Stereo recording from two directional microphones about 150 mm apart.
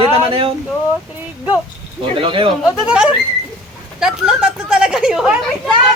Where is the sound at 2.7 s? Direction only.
5° right (ahead or behind).